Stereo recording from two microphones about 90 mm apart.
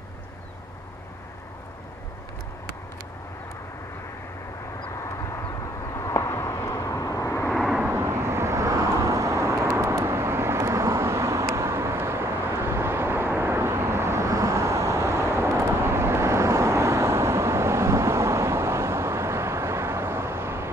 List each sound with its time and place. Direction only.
5.9 s vehicle: 30° left (ahead or behind)
7.9 s vehicle: 30° right (ahead or behind)